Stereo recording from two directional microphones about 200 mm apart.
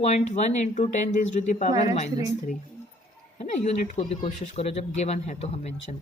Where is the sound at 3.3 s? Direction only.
35° left (ahead or behind).